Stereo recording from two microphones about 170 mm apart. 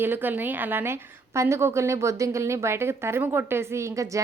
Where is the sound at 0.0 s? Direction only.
10° right (ahead or behind).